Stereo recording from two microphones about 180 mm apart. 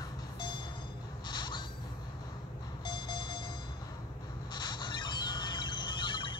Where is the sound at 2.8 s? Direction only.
25° left (ahead or behind).